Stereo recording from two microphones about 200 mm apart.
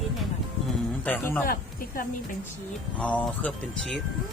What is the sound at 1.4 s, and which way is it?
Speech, 45° left (ahead or behind).